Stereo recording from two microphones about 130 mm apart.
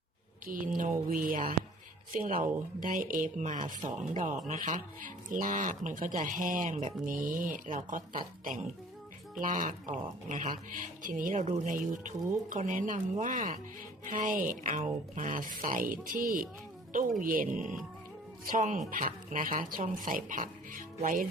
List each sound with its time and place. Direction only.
0.4 s speech: 90° right
4.2 s speech: 75° right (ahead or behind); by 6.7 s 90° right
6.7 s speech: 75° right (ahead or behind); by 21.2 s 90° right